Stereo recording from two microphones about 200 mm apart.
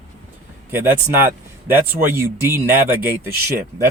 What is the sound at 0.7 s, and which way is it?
Speech, 10° right (ahead or behind).